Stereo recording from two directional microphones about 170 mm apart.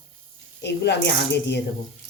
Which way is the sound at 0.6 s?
80° left.